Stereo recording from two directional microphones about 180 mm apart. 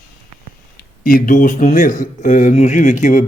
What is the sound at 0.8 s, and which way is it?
Speech, 55° left (ahead or behind).